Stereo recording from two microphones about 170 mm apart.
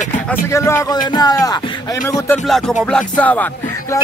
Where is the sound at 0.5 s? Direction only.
15° left (ahead or behind).